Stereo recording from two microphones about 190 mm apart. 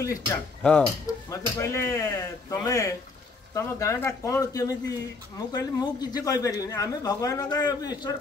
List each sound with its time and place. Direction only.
0.0 s speech: 15° left (ahead or behind)
0.6 s speech: 5° left (ahead or behind); by 8.1 s 20° left (ahead or behind)